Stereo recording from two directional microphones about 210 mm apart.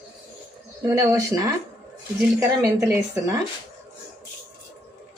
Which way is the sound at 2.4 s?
15° right (ahead or behind).